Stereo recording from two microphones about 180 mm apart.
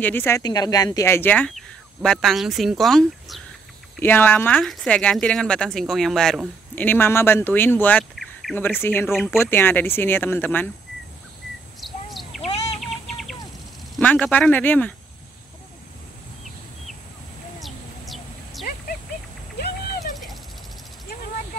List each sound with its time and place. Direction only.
0.0 s speech: 10° left (ahead or behind)
8.5 s speech: 10° left (ahead or behind)
11.8 s bird vocalization: centre (ahead or behind)
12.4 s bird: 35° left (ahead or behind)
12.8 s bird: centre (ahead or behind)
13.9 s speech: 5° left (ahead or behind)
17.6 s a sound: centre (ahead or behind)